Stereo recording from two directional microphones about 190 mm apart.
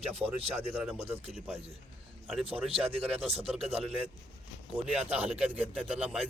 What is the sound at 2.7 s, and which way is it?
Speech, 30° right (ahead or behind).